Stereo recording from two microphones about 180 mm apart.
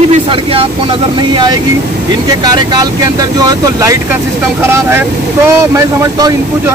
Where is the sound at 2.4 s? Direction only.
20° right (ahead or behind).